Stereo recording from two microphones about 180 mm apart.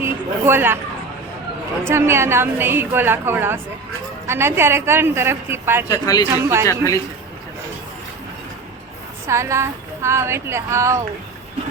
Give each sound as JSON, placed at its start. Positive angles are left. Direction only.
{"t": 0.0, "sound": "speech", "side_deg": -10}
{"t": 1.8, "sound": "a woman's voice", "side_deg": -15}
{"t": 5.9, "sound": "a man's voice", "side_deg": 20}
{"t": 9.2, "sound": "a woman's voice", "side_deg": -15}